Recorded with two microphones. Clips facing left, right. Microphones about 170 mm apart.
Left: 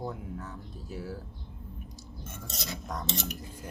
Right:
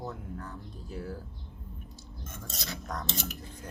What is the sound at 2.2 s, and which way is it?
Speech, 5° left (ahead or behind).